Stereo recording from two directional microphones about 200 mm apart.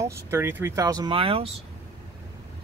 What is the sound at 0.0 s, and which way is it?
Speech, 10° right (ahead or behind).